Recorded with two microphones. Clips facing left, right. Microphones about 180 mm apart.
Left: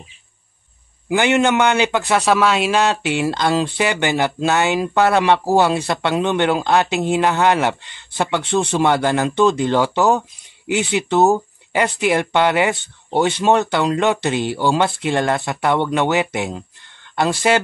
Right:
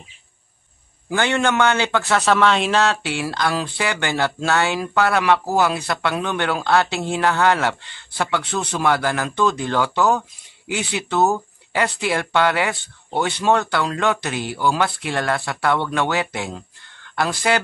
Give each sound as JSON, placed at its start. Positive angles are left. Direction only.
{"t": 1.0, "sound": "a man's voice", "side_deg": 15}